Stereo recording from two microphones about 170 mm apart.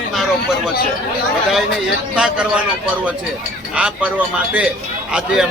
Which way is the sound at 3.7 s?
5° right (ahead or behind).